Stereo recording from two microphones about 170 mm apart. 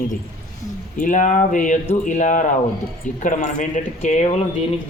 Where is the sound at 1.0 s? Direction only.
50° left (ahead or behind).